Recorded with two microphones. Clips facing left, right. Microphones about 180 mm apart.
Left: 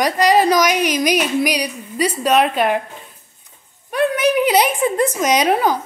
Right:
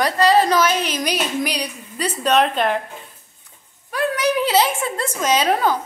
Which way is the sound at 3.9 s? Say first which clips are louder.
Left 4 dB; 20° left (ahead or behind).